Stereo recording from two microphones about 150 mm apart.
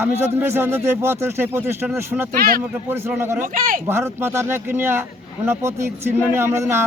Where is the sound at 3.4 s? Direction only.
65° right (ahead or behind).